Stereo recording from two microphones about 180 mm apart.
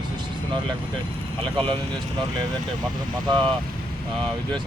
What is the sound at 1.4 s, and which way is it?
Speech, 30° right (ahead or behind).